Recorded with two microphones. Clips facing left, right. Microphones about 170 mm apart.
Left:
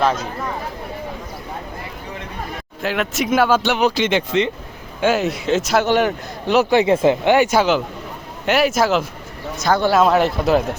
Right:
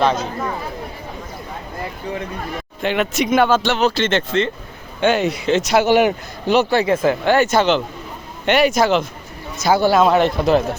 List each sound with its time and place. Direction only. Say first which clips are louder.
2.8 s speech: right 2 dB; centre (ahead or behind)
4.9 s speech: right 1 dB; 5° left (ahead or behind)
6.6 s speech: left 3 dB; 15° left (ahead or behind)